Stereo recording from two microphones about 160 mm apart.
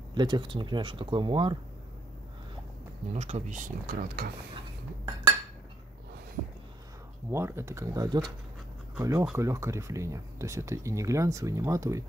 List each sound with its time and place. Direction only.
0.1 s speech: 30° right (ahead or behind)
3.1 s speech: 45° right (ahead or behind); by 4.3 s 60° right (ahead or behind)
7.2 s speech: 15° right (ahead or behind)